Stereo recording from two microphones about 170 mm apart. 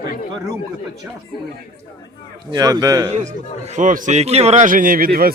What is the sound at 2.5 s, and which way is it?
Speech, 25° right (ahead or behind).